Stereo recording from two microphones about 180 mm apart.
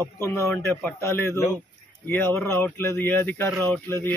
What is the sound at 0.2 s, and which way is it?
Speech, 15° left (ahead or behind).